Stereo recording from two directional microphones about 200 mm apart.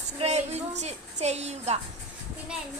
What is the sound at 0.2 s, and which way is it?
A woman's voice, 35° right (ahead or behind).